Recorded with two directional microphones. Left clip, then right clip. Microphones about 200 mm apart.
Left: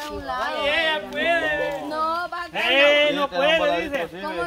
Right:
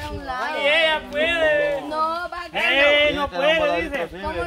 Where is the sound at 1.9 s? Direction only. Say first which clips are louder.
Right 1 dB; 10° left (ahead or behind).